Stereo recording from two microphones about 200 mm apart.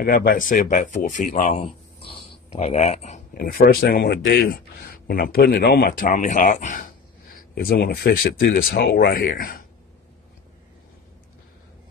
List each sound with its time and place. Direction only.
0.0 s speech: 45° left (ahead or behind)
3.3 s speech: 45° left (ahead or behind)